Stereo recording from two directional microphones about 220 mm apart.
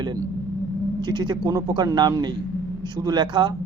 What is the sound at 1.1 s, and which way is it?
Speech, 20° right (ahead or behind).